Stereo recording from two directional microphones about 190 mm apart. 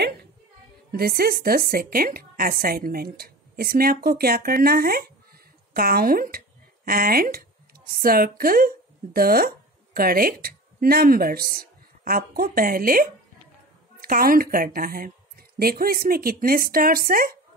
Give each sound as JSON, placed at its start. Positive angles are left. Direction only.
{"t": 0.9, "sound": "a woman's voice", "side_deg": -55}